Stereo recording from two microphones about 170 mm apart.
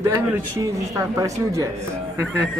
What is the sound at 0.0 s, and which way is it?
A man's voice, 15° right (ahead or behind).